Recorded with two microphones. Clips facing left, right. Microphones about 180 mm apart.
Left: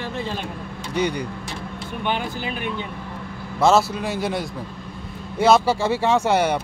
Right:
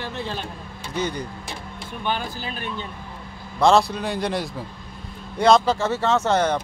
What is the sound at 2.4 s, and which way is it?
Speech, 15° left (ahead or behind).